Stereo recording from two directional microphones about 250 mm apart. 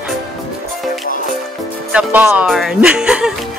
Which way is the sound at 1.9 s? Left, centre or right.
Centre.